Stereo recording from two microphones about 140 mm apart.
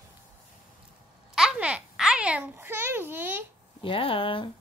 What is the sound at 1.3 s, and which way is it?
Babbling, 5° right (ahead or behind).